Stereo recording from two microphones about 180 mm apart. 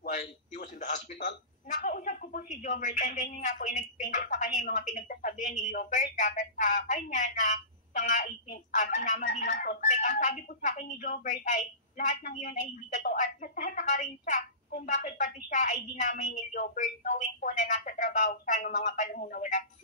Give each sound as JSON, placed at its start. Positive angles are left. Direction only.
{"t": 0.1, "sound": "a sound", "side_deg": 40}
{"t": 1.8, "sound": "speech", "side_deg": 60}
{"t": 2.0, "sound": "speech", "side_deg": 45}